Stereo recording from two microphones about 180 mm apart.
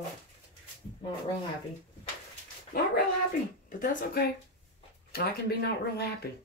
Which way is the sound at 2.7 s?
55° left (ahead or behind).